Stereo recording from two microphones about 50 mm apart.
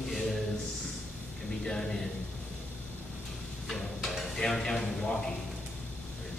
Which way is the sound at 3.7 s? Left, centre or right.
Centre.